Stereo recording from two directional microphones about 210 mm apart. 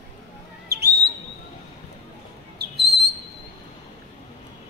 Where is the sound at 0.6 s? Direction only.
50° right (ahead or behind).